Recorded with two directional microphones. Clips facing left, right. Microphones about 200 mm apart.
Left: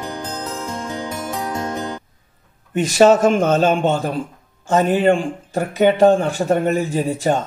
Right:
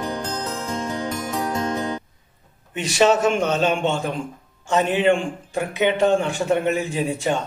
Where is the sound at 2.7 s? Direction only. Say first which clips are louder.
Left 5 dB; 45° left (ahead or behind).